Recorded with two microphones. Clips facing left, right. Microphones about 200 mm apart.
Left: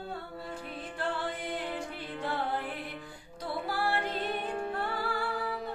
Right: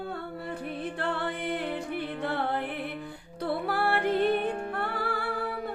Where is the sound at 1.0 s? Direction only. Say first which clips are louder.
Right 1 dB; 60° right (ahead or behind).